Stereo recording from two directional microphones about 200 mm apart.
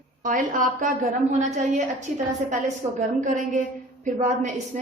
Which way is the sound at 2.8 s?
35° right (ahead or behind).